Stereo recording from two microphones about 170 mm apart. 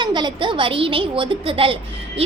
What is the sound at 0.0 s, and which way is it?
A child's voice, 25° right (ahead or behind).